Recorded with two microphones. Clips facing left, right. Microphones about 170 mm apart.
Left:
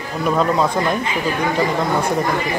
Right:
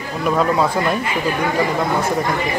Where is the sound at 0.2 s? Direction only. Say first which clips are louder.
Even; centre (ahead or behind).